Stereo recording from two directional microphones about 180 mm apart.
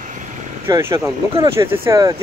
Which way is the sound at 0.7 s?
15° right (ahead or behind).